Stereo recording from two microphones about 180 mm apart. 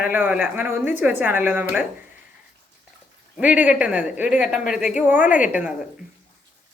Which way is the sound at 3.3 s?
5° right (ahead or behind).